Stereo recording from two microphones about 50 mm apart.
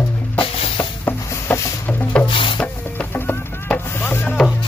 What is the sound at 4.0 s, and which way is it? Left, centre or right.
Music, left.